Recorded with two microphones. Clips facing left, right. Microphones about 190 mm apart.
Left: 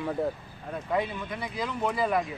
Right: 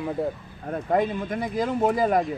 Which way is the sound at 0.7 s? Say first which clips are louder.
Right 6 dB; 50° right (ahead or behind).